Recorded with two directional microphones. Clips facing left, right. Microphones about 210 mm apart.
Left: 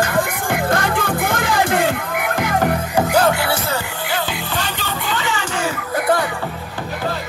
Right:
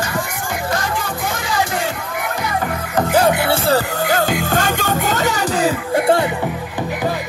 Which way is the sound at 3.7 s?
45° right (ahead or behind).